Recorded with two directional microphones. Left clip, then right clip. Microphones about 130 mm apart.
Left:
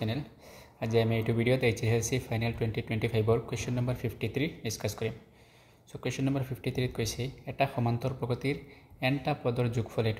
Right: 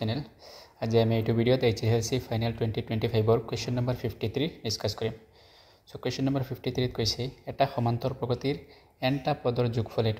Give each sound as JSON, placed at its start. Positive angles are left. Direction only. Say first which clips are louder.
{"t": 0.0, "sound": "speech", "louder": "right 2 dB", "side_deg": -40}